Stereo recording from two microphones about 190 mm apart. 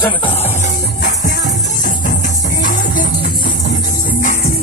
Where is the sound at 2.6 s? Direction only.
45° left (ahead or behind).